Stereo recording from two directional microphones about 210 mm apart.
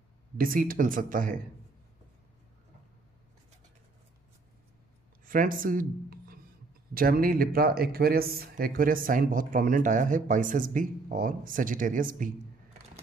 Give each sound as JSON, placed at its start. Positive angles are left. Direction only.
{"t": 0.4, "sound": "speech", "side_deg": -45}
{"t": 5.2, "sound": "speech", "side_deg": -40}